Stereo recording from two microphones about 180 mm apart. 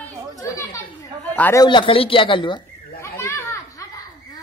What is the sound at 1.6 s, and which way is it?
Speech, 25° left (ahead or behind).